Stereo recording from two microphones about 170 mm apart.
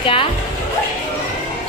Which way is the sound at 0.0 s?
30° left (ahead or behind).